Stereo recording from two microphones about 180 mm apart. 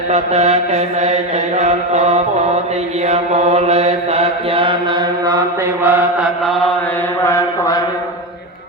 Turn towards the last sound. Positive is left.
turn(degrees=20)  # may be behind; listen again after turning